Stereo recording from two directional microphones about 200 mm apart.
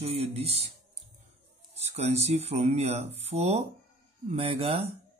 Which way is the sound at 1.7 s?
30° right (ahead or behind).